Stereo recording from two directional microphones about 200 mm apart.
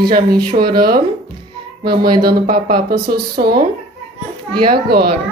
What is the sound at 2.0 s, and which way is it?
Speech, 20° right (ahead or behind).